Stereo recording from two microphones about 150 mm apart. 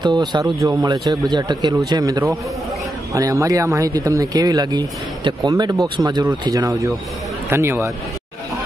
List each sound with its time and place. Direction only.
0.0 s speech: 30° right (ahead or behind)